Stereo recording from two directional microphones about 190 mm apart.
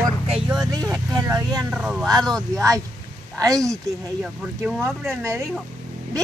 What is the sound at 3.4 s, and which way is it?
Speech, 20° right (ahead or behind).